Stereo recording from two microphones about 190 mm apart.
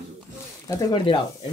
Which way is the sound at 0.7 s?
20° left (ahead or behind).